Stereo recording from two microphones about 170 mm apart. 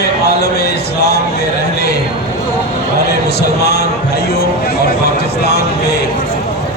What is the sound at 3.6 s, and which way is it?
Speech, 75° left (ahead or behind).